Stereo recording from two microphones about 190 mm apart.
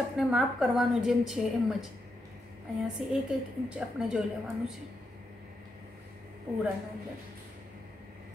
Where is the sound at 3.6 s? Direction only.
5° right (ahead or behind).